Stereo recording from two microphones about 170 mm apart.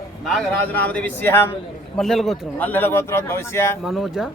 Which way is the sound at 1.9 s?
Centre (ahead or behind).